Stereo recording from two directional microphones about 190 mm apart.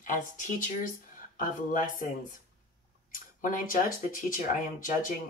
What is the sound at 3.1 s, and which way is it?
Speech, 45° left (ahead or behind).